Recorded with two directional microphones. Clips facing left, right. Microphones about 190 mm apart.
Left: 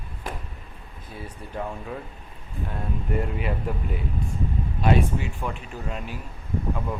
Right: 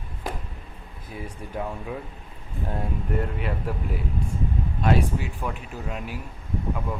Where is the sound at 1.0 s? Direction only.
10° right (ahead or behind).